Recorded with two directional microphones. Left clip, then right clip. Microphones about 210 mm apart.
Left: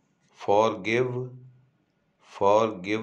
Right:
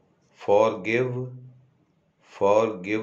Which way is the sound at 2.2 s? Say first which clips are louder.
Right 1 dB; 25° left (ahead or behind).